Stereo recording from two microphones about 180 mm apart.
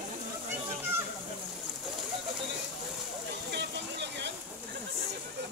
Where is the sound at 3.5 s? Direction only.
70° right (ahead or behind).